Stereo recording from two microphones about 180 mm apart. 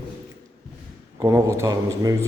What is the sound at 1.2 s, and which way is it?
Speech, 15° right (ahead or behind).